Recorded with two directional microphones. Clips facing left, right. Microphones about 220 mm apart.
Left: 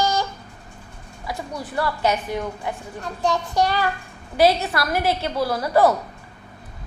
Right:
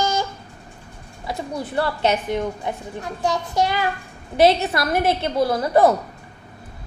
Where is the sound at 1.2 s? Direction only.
25° right (ahead or behind).